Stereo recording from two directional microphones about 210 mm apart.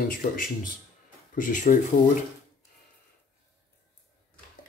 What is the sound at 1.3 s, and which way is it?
Speech, 40° left (ahead or behind).